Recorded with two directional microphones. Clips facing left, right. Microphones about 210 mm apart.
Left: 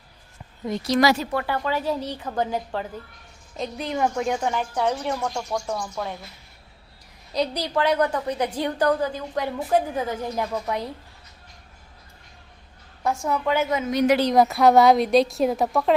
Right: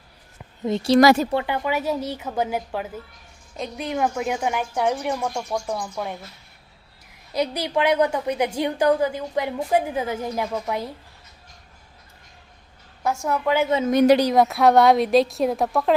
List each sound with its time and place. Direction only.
0.6 s a woman's voice: 30° right (ahead or behind)
0.9 s speech: 50° right (ahead or behind)
1.3 s a woman's voice: 20° right (ahead or behind)
7.3 s a woman's voice: 10° right (ahead or behind)
13.0 s a woman's voice: centre (ahead or behind)